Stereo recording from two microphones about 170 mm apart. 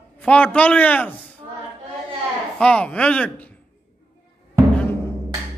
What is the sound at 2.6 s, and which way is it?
Speech, 5° left (ahead or behind).